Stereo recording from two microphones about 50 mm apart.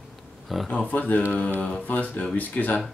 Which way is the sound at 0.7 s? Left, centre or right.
Left.